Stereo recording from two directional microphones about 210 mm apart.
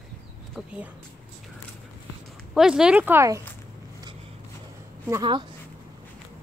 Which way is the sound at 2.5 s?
Centre (ahead or behind).